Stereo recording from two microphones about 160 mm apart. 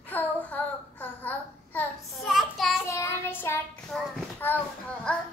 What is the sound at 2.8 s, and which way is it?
Child singing, 15° left (ahead or behind).